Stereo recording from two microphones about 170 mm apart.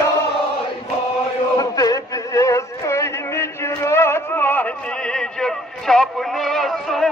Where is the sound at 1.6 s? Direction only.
20° left (ahead or behind).